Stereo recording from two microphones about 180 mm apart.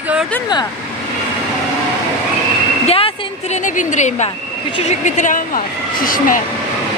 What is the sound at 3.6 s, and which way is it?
Speech, 45° left (ahead or behind).